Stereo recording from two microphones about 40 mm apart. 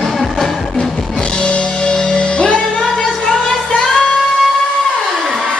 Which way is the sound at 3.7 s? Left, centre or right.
Centre.